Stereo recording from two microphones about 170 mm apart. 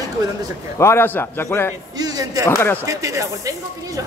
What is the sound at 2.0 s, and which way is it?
Speech, 20° right (ahead or behind).